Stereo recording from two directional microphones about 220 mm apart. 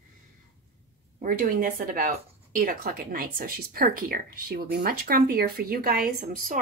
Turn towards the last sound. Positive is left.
turn(degrees=-40)  # may be behind; listen again after turning